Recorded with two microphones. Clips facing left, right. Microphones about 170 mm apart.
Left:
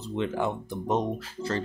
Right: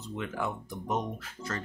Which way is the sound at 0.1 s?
30° left (ahead or behind).